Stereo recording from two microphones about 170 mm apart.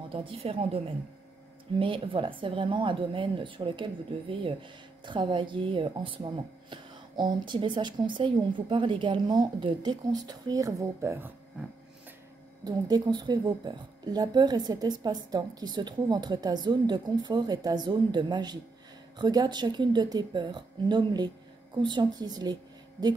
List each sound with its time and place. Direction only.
0.1 s a woman's voice: 35° right (ahead or behind); by 11.3 s 15° right (ahead or behind)
11.6 s a sound: 5° right (ahead or behind)
12.6 s a woman's voice: 25° right (ahead or behind)